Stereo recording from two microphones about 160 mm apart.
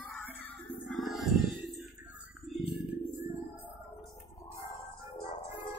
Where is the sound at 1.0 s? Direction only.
Centre (ahead or behind).